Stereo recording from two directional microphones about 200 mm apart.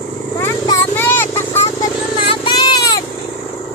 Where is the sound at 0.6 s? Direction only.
15° left (ahead or behind).